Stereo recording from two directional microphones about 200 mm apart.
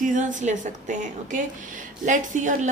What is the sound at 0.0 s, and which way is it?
Speech, 40° right (ahead or behind).